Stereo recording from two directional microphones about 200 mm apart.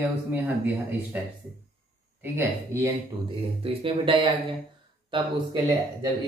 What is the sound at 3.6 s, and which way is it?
Speech, 25° right (ahead or behind).